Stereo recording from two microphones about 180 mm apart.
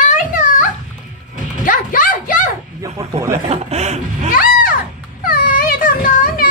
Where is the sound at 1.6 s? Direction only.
50° left (ahead or behind).